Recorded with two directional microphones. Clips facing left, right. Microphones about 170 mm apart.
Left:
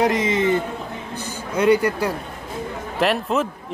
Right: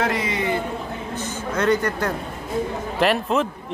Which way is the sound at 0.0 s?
20° left (ahead or behind).